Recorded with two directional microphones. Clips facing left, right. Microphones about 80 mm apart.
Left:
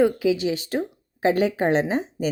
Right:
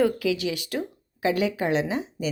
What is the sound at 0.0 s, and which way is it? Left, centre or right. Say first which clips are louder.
Speech: left 3 dB; left.